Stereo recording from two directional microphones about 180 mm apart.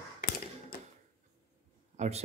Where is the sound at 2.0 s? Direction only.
35° right (ahead or behind).